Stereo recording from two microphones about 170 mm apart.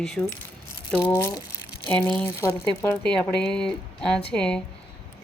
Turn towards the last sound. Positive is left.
turn(degrees=5)  # may be behind; listen again after turning